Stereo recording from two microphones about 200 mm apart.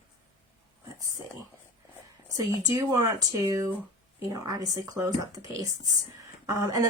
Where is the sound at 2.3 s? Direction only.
15° right (ahead or behind).